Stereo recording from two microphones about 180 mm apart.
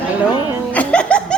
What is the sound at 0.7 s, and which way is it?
Laughter, 5° left (ahead or behind).